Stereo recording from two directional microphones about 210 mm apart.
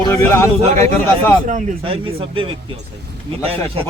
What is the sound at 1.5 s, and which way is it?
Speech, 30° right (ahead or behind).